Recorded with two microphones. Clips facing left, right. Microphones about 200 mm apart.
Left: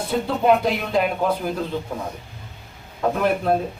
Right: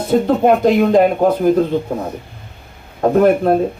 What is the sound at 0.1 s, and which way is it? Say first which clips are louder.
Speech: right 6 dB; 45° right (ahead or behind).